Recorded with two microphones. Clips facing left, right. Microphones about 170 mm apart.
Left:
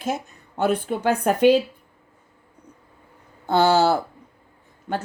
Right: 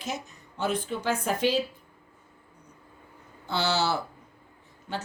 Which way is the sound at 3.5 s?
50° left (ahead or behind).